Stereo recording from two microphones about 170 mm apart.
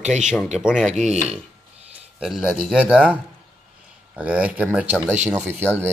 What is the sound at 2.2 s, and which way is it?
Speech, 5° right (ahead or behind).